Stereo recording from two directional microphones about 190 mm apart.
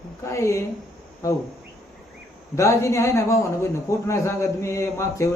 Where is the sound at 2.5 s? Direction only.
15° left (ahead or behind).